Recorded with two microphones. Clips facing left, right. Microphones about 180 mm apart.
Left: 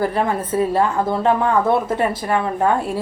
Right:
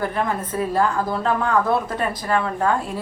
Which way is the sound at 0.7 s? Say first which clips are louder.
Left 3 dB; 25° left (ahead or behind).